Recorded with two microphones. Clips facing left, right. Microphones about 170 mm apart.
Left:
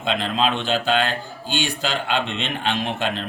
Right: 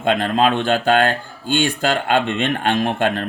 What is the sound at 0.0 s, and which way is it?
Speech, 50° right (ahead or behind).